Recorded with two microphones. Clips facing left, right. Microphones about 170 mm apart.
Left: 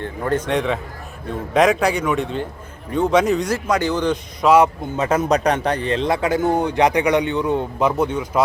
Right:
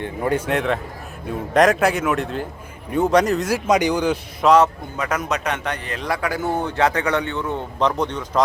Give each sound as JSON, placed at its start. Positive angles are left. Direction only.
{"t": 0.0, "sound": "a man's voice", "side_deg": -10}
{"t": 3.7, "sound": "a man's voice", "side_deg": -15}
{"t": 4.4, "sound": "a man's voice", "side_deg": 10}
{"t": 4.9, "sound": "a man's voice", "side_deg": 25}